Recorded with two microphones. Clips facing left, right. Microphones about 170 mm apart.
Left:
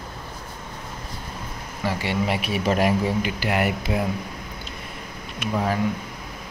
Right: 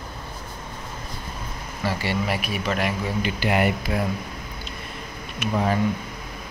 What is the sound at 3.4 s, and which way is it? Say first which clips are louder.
Speech: right 3 dB; centre (ahead or behind).